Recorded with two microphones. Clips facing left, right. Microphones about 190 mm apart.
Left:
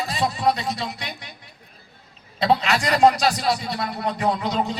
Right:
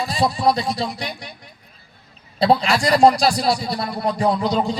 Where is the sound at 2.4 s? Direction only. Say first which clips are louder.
Right 3 dB; 35° right (ahead or behind).